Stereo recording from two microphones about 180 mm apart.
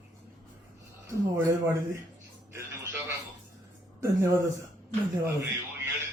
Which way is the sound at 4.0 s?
15° right (ahead or behind).